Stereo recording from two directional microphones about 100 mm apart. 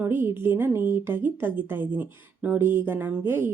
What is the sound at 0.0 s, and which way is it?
Speech, 20° right (ahead or behind).